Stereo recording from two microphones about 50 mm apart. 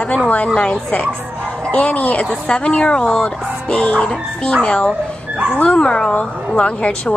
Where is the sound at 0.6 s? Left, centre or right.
Left.